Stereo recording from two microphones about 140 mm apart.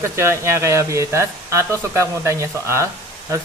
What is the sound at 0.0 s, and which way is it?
Speech, 20° right (ahead or behind).